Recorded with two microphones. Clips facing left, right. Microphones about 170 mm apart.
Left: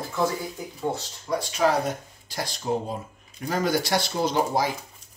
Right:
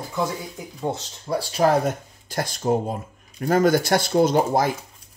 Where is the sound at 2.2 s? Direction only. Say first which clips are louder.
Right 5 dB; 50° right (ahead or behind).